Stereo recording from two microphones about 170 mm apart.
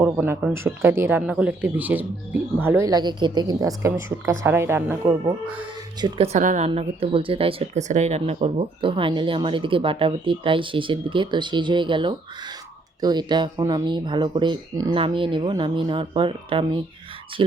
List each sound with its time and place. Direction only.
0.0 s a woman's voice: 15° right (ahead or behind)
6.0 s speech: 25° right (ahead or behind)
6.2 s speech: 45° right (ahead or behind)